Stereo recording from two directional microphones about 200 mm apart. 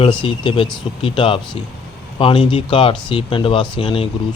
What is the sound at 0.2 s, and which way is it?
Speech, 25° left (ahead or behind).